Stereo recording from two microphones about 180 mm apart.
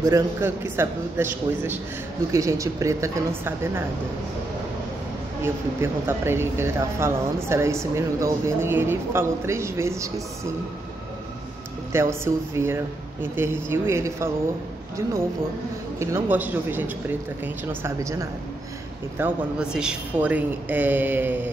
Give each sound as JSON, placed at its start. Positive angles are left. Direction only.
{"t": 0.0, "sound": "speech", "side_deg": -15}
{"t": 5.4, "sound": "speech", "side_deg": -15}
{"t": 11.9, "sound": "speech", "side_deg": -15}
{"t": 16.0, "sound": "speech", "side_deg": -15}
{"t": 19.1, "sound": "speech", "side_deg": -10}